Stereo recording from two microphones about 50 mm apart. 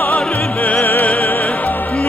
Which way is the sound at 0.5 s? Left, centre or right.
Left.